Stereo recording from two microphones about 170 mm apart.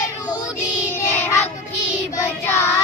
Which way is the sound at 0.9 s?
15° left (ahead or behind).